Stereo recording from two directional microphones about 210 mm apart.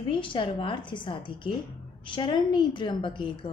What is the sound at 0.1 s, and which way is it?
A woman's voice, 25° left (ahead or behind).